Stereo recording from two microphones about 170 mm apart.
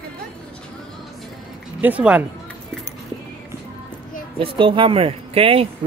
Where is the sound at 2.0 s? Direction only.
10° right (ahead or behind).